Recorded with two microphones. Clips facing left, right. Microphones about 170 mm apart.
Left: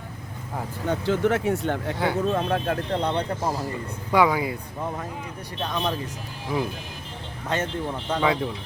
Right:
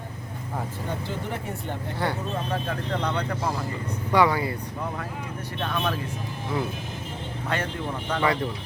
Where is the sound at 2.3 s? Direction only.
60° left (ahead or behind).